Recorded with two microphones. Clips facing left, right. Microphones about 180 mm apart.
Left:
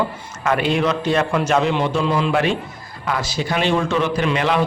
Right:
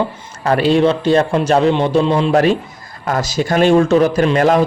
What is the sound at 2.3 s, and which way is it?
A man's voice, 40° right (ahead or behind).